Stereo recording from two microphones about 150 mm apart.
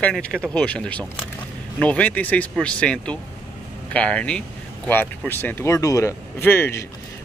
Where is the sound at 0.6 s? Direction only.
10° left (ahead or behind).